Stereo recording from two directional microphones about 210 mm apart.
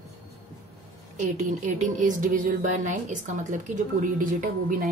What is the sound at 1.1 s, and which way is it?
Speech, 35° right (ahead or behind).